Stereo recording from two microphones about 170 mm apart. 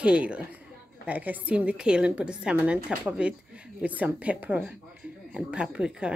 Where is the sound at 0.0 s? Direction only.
5° right (ahead or behind).